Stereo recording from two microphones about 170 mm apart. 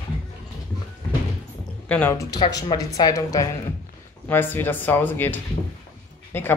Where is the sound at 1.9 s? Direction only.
15° left (ahead or behind).